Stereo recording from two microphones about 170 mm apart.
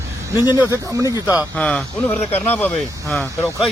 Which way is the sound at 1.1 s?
10° right (ahead or behind).